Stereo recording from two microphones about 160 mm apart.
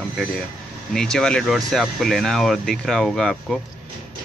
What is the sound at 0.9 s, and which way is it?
Speech, 5° left (ahead or behind).